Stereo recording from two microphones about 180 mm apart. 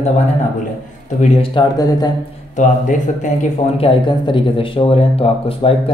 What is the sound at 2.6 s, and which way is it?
Speech, 45° left (ahead or behind).